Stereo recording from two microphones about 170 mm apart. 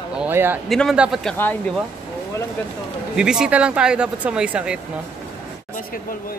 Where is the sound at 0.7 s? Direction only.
Centre (ahead or behind).